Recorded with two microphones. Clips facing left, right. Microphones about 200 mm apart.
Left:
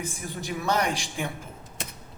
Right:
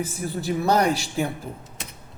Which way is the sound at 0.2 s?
35° right (ahead or behind).